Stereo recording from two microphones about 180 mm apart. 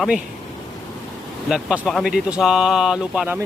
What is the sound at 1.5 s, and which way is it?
Speech, 5° right (ahead or behind).